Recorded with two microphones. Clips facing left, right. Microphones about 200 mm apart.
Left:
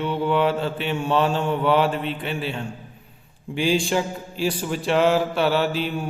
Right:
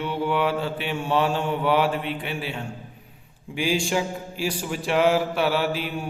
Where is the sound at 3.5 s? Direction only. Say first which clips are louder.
Left 3 dB; 10° right (ahead or behind).